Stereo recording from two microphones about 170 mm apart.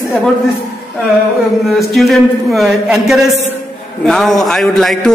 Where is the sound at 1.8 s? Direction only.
Centre (ahead or behind).